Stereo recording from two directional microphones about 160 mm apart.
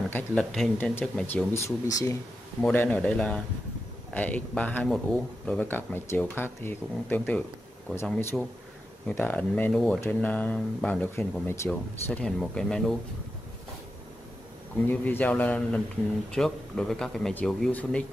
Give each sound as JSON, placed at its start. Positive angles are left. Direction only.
{"t": 0.1, "sound": "speech", "side_deg": 5}
{"t": 1.9, "sound": "speech", "side_deg": 20}
{"t": 2.6, "sound": "speech", "side_deg": 10}
{"t": 12.2, "sound": "speech", "side_deg": 5}
{"t": 14.9, "sound": "speech", "side_deg": 10}